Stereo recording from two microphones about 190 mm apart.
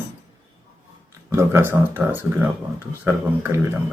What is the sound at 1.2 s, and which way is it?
Speech, 15° right (ahead or behind).